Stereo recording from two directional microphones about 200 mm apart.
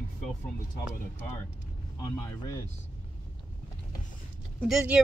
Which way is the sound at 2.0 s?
15° left (ahead or behind).